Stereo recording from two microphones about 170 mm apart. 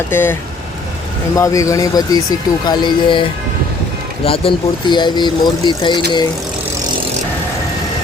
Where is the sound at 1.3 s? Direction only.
20° left (ahead or behind).